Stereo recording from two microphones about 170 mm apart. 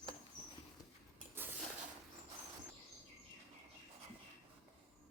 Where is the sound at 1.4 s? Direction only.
15° right (ahead or behind).